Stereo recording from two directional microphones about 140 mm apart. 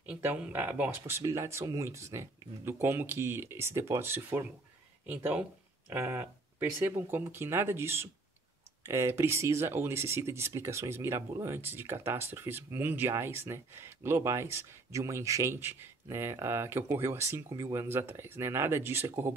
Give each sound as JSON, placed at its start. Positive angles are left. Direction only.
{"t": 0.0, "sound": "speech", "side_deg": -10}